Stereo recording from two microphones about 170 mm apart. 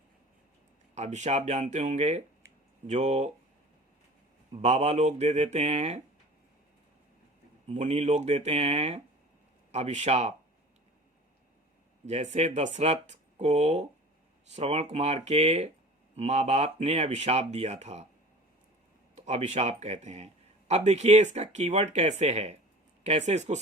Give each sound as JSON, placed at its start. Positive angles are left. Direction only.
{"t": 0.9, "sound": "speech", "side_deg": -45}
{"t": 4.5, "sound": "speech", "side_deg": -35}
{"t": 7.7, "sound": "speech", "side_deg": -40}
{"t": 12.0, "sound": "speech", "side_deg": -40}
{"t": 19.1, "sound": "speech", "side_deg": -40}